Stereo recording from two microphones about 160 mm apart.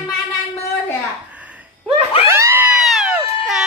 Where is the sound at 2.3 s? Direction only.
15° right (ahead or behind).